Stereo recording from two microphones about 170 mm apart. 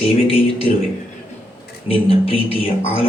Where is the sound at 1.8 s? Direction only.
35° left (ahead or behind).